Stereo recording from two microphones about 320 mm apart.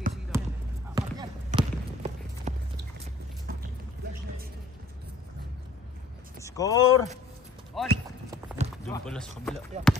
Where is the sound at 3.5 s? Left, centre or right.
Right.